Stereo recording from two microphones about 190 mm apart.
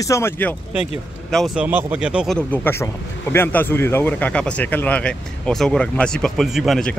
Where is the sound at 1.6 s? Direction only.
10° right (ahead or behind).